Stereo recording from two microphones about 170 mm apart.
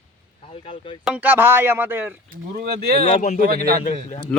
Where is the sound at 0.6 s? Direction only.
30° left (ahead or behind).